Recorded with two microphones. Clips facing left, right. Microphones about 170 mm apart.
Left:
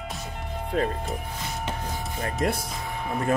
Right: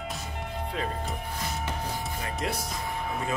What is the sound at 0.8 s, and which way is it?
Speech, 45° left (ahead or behind).